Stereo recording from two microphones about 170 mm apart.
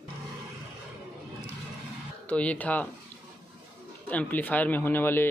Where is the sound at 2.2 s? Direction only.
10° left (ahead or behind).